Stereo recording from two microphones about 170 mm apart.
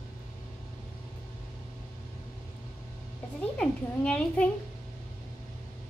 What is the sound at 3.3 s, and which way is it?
A child's voice, 5° left (ahead or behind).